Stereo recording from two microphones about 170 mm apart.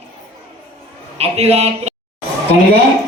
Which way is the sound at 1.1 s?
40° right (ahead or behind).